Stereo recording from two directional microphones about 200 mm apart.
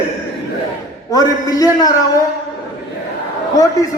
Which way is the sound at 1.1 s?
20° left (ahead or behind).